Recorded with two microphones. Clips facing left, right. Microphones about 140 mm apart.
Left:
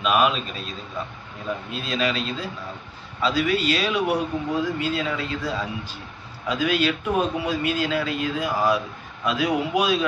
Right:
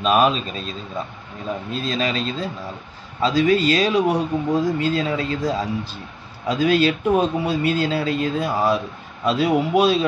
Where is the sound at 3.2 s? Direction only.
35° right (ahead or behind).